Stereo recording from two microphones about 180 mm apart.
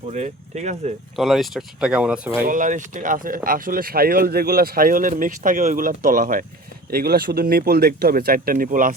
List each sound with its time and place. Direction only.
0.1 s speech: 40° right (ahead or behind)
1.1 s speech: centre (ahead or behind)
2.5 s speech: 45° right (ahead or behind)